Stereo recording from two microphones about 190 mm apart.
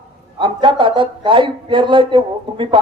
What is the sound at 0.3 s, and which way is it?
Speech, 25° right (ahead or behind).